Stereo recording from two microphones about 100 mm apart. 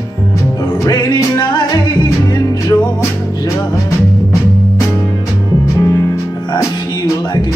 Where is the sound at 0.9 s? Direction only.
40° left (ahead or behind).